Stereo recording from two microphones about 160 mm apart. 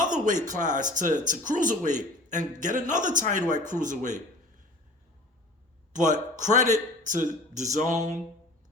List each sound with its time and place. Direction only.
0.4 s a man's voice: 50° right (ahead or behind)
5.9 s a man's voice: 50° right (ahead or behind)